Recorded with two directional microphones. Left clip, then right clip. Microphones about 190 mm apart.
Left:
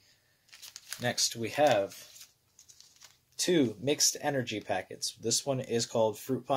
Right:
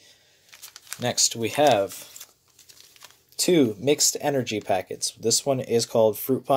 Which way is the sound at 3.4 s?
25° right (ahead or behind).